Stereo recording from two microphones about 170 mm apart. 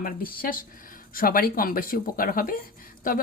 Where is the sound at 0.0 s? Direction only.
55° left (ahead or behind).